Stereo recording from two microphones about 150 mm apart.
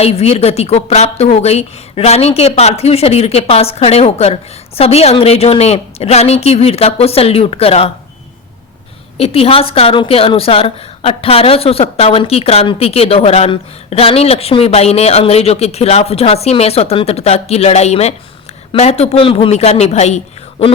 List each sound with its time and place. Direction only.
0.0 s a woman's voice: 45° left (ahead or behind)
9.1 s a woman's voice: 40° left (ahead or behind)